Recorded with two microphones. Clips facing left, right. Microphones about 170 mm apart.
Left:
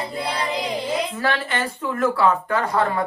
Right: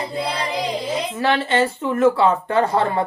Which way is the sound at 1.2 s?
25° right (ahead or behind).